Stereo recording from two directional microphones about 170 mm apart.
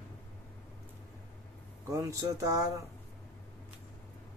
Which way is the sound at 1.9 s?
20° right (ahead or behind).